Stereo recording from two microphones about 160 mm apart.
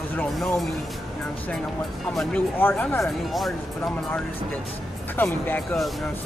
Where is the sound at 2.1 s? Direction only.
10° left (ahead or behind).